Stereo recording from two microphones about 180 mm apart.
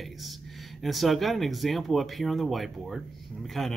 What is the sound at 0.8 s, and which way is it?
Speech, centre (ahead or behind).